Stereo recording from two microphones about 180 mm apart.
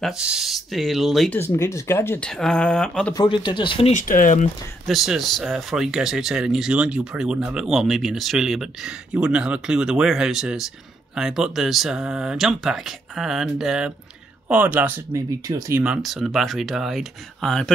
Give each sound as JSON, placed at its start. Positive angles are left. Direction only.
{"t": 0.0, "sound": "speech", "side_deg": -5}
{"t": 1.4, "sound": "speech", "side_deg": 15}
{"t": 3.2, "sound": "speech", "side_deg": 25}
{"t": 3.9, "sound": "speech", "side_deg": 45}
{"t": 4.8, "sound": "speech", "side_deg": 0}
{"t": 15.8, "sound": "speech", "side_deg": -5}